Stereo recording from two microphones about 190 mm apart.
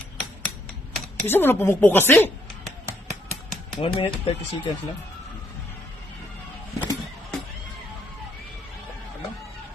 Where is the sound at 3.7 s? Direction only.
25° left (ahead or behind).